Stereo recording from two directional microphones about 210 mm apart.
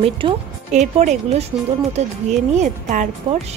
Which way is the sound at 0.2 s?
25° right (ahead or behind).